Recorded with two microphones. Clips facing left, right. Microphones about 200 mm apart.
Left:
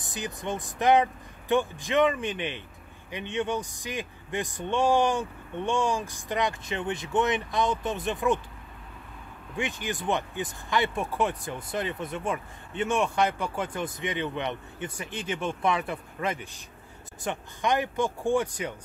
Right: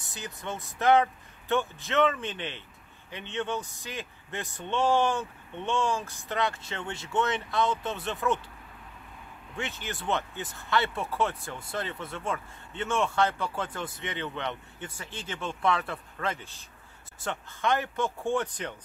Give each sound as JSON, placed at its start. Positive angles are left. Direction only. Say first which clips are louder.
{"t": 0.0, "sound": "speech", "louder": "left 5 dB", "side_deg": 15}
{"t": 9.6, "sound": "speech", "louder": "left 5 dB", "side_deg": 15}